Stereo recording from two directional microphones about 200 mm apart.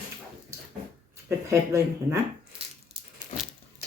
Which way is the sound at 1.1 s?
15° right (ahead or behind).